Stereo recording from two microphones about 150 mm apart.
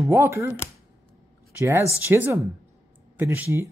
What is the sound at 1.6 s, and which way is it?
Speech, 20° right (ahead or behind).